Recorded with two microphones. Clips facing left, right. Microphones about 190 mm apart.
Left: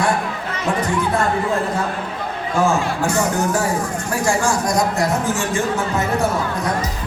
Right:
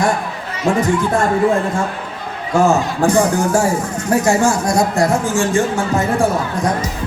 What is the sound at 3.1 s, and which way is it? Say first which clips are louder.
Speech: right 6 dB; 30° right (ahead or behind).